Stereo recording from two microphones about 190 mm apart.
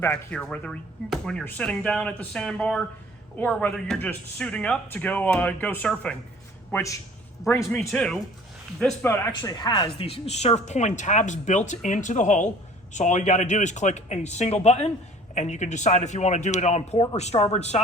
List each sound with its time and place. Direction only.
0.0 s a man's voice: 5° left (ahead or behind)
7.8 s speech: 5° left (ahead or behind); by 17.7 s 35° left (ahead or behind)